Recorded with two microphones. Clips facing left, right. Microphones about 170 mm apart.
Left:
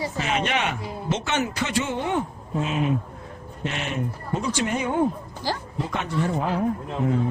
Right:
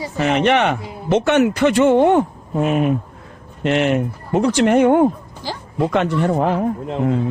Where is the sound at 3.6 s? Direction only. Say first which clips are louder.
Right 12 dB; 75° right (ahead or behind).